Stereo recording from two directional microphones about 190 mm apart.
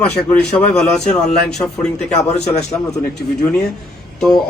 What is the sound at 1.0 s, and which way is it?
Speech, 35° left (ahead or behind).